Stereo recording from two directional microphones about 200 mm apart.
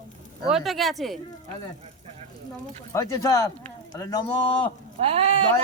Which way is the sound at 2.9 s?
15° left (ahead or behind).